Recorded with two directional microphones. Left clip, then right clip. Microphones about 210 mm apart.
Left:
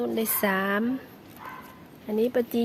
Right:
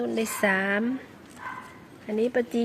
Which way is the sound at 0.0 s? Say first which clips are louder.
Right 1 dB; 10° left (ahead or behind).